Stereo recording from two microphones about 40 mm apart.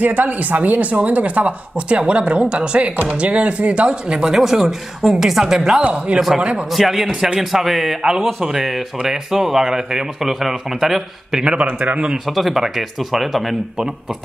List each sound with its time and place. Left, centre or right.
0.0 s speech: right
4.2 s speech: centre
11.6 s speech: right
12.3 s speech: centre